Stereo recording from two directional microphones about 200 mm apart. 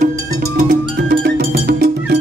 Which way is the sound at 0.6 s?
45° right (ahead or behind).